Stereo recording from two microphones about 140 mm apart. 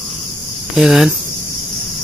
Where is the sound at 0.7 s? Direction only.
Centre (ahead or behind).